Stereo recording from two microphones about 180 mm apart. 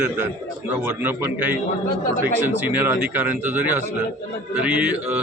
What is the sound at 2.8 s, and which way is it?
Music, 10° right (ahead or behind).